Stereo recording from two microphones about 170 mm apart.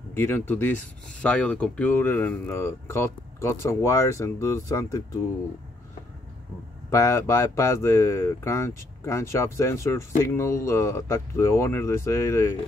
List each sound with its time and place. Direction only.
0.1 s speech: 10° left (ahead or behind)
6.9 s speech: 15° left (ahead or behind)